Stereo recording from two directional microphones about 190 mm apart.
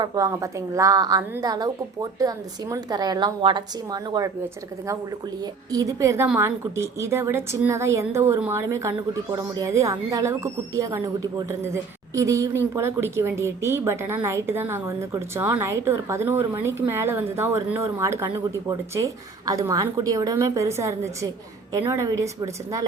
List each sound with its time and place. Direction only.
0.0 s a woman's voice: 15° right (ahead or behind)
5.7 s a woman's voice: 15° right (ahead or behind)